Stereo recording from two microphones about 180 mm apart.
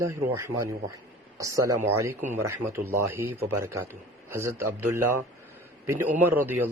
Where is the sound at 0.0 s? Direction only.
15° right (ahead or behind).